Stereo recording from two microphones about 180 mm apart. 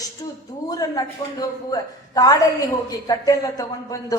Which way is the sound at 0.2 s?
20° left (ahead or behind).